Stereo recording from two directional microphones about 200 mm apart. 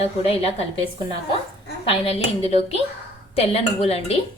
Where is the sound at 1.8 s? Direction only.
30° left (ahead or behind).